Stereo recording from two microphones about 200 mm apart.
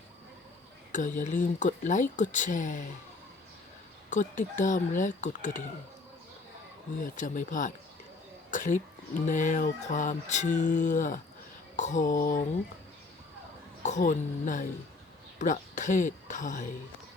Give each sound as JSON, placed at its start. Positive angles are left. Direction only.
{"t": 0.9, "sound": "music", "side_deg": 40}
{"t": 4.1, "sound": "music", "side_deg": 40}
{"t": 7.2, "sound": "music", "side_deg": 40}
{"t": 8.4, "sound": "a sound", "side_deg": 40}
{"t": 9.2, "sound": "music", "side_deg": 40}
{"t": 13.8, "sound": "music", "side_deg": 35}